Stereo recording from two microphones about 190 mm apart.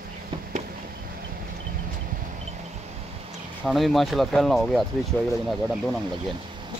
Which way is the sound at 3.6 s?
Centre (ahead or behind).